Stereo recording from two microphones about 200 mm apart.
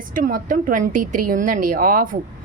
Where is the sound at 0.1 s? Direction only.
45° right (ahead or behind).